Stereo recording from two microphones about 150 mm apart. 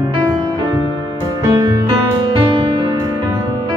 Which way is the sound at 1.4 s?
20° right (ahead or behind).